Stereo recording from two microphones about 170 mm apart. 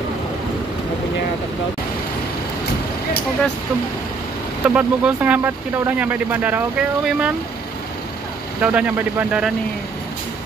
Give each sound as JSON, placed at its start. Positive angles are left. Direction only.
{"t": 4.6, "sound": "speech", "side_deg": -5}
{"t": 8.5, "sound": "speech", "side_deg": -10}